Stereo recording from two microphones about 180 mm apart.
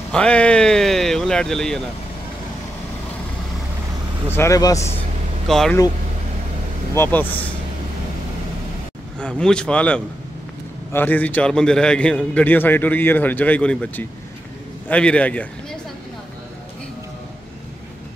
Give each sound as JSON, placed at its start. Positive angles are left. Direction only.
{"t": 0.1, "sound": "speech", "side_deg": 5}
{"t": 4.3, "sound": "a man's voice", "side_deg": 15}
{"t": 5.5, "sound": "speech", "side_deg": 0}
{"t": 6.9, "sound": "a man's voice", "side_deg": 10}
{"t": 9.2, "sound": "a man's voice", "side_deg": 5}